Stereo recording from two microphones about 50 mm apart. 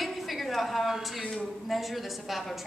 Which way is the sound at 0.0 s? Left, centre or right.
Centre.